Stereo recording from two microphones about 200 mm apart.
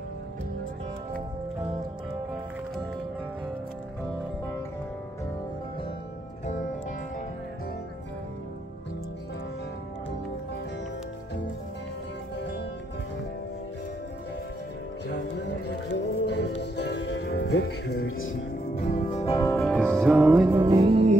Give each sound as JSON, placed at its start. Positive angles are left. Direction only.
{"t": 12.4, "sound": "music", "side_deg": 60}
{"t": 15.0, "sound": "music", "side_deg": 60}
{"t": 18.0, "sound": "speech", "side_deg": 80}
{"t": 18.8, "sound": "music", "side_deg": 35}
{"t": 19.6, "sound": "music", "side_deg": 5}
{"t": 20.5, "sound": "music", "side_deg": -25}